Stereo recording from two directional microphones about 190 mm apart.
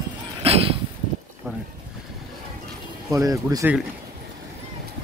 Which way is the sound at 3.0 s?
15° right (ahead or behind).